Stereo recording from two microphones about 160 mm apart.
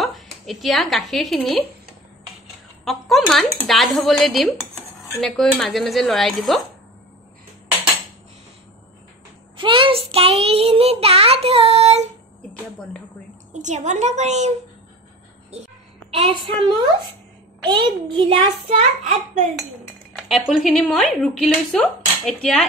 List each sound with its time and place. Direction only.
0.0 s a woman's voice: centre (ahead or behind)
2.8 s speech: centre (ahead or behind)
9.6 s child singing: 30° right (ahead or behind)
13.5 s a woman's voice: 50° right (ahead or behind)
15.5 s a woman's voice: 40° right (ahead or behind)
18.1 s child singing: 35° right (ahead or behind)
20.1 s speech: centre (ahead or behind)